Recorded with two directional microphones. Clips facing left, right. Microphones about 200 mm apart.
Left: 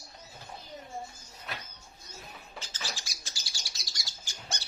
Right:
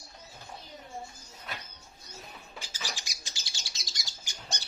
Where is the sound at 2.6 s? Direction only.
15° right (ahead or behind).